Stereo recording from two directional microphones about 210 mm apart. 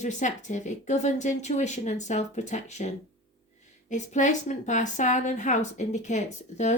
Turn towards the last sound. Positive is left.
turn(degrees=35)  # may be behind; listen again after turning